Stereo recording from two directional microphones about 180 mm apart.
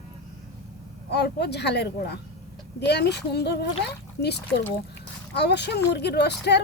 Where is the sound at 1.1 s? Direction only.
65° left (ahead or behind).